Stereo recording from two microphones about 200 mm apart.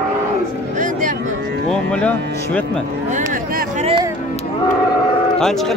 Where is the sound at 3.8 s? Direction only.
25° right (ahead or behind).